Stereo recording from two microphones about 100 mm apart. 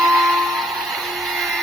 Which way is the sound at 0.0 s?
Centre (ahead or behind).